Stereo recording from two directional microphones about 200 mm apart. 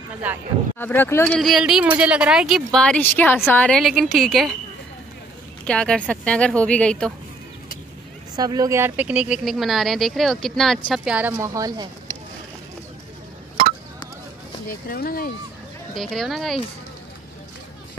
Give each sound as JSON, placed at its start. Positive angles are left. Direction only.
{"t": 0.7, "sound": "speech", "side_deg": 10}
{"t": 5.7, "sound": "speech", "side_deg": 5}
{"t": 8.4, "sound": "a woman's voice", "side_deg": -20}
{"t": 14.7, "sound": "speech", "side_deg": 45}
{"t": 15.9, "sound": "speech", "side_deg": 0}